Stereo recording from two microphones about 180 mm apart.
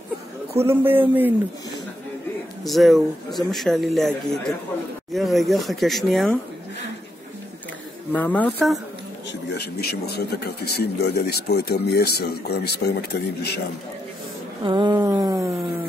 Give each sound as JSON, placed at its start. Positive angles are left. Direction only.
{"t": 0.6, "sound": "a man's voice", "side_deg": -10}
{"t": 2.6, "sound": "speech", "side_deg": 0}
{"t": 8.1, "sound": "speech", "side_deg": 10}
{"t": 9.5, "sound": "speech", "side_deg": 65}
{"t": 14.6, "sound": "a sound", "side_deg": -25}